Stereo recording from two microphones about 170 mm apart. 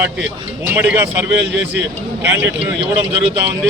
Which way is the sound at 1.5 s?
90° right.